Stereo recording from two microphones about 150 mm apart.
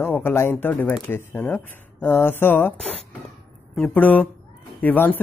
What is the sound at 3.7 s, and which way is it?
Speech, 10° left (ahead or behind).